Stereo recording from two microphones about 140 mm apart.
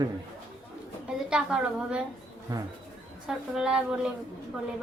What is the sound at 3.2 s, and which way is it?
Speech, 5° right (ahead or behind).